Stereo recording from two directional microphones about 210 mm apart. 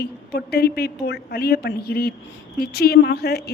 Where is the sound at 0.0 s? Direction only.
50° left (ahead or behind).